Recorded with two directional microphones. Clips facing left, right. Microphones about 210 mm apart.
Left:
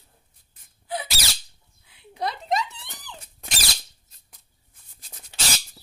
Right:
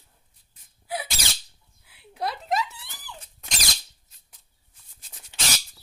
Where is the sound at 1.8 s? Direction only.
5° right (ahead or behind).